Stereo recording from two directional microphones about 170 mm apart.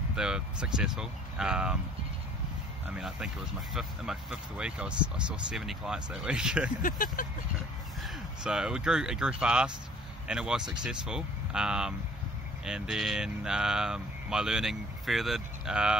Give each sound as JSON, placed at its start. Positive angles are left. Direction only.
{"t": 0.1, "sound": "speech", "side_deg": -5}
{"t": 2.9, "sound": "speech", "side_deg": -5}
{"t": 6.8, "sound": "speech", "side_deg": 55}
{"t": 8.0, "sound": "speech", "side_deg": -5}